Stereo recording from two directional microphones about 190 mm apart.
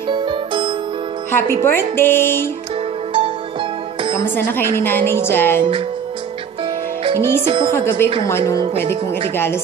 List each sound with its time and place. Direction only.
0.1 s music: 25° right (ahead or behind)
1.3 s a woman's voice: 10° left (ahead or behind)
4.2 s a woman's voice: 10° left (ahead or behind)
7.2 s a woman's voice: 15° left (ahead or behind)